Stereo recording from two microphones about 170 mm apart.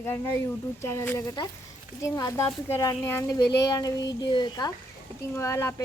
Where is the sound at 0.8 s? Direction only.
15° left (ahead or behind).